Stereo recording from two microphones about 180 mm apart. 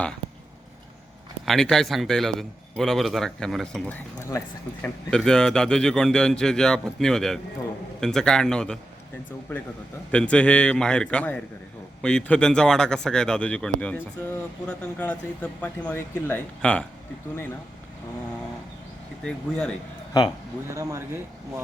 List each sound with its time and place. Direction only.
1.5 s a man's voice: 5° left (ahead or behind)
10.1 s speech: 5° left (ahead or behind)
19.2 s a man's voice: 5° left (ahead or behind)
20.7 s speech: 15° right (ahead or behind)